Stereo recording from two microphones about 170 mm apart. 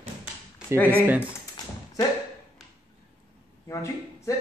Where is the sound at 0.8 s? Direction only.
10° right (ahead or behind).